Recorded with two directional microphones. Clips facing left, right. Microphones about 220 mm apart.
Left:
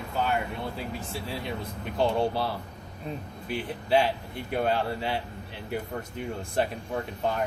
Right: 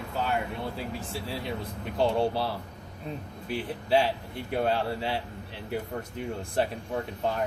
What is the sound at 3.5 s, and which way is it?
Speech, 35° right (ahead or behind).